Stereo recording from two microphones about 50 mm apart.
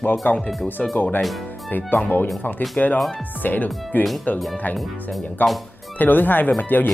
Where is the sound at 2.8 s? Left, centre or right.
Left.